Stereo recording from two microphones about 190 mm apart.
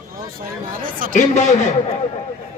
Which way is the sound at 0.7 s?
45° right (ahead or behind).